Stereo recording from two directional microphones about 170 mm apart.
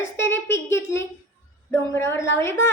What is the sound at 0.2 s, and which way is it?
A woman's voice, 15° left (ahead or behind).